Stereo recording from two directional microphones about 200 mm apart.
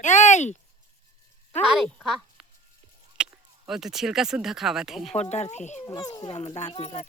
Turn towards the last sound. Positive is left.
turn(degrees=35)  # may be behind; listen again after turning